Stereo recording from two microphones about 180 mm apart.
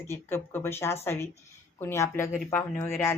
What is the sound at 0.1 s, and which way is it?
A woman's voice, 15° left (ahead or behind).